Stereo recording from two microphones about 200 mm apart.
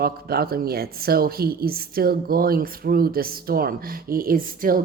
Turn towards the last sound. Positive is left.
turn(degrees=-45)  # may be behind; listen again after turning